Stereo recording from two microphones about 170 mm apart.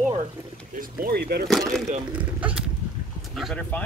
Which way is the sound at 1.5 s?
Centre (ahead or behind).